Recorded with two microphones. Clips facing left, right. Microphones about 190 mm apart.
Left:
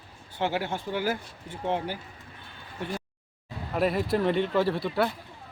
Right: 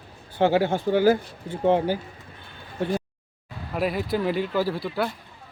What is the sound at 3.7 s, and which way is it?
Speech, centre (ahead or behind).